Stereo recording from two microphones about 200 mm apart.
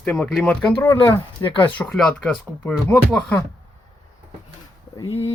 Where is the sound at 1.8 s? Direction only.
5° left (ahead or behind).